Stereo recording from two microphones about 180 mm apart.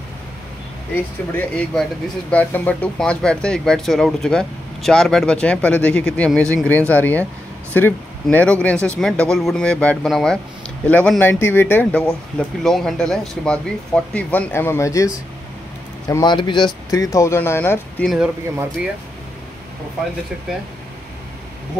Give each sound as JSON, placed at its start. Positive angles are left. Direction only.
{"t": 1.3, "sound": "speech", "side_deg": 5}
{"t": 16.1, "sound": "speech", "side_deg": 25}
{"t": 18.0, "sound": "speech", "side_deg": -5}